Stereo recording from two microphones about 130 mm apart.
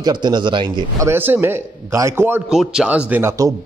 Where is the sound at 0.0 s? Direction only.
35° right (ahead or behind).